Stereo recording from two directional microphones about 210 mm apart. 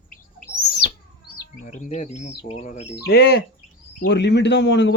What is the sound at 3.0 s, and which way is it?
A man's voice, 50° left (ahead or behind).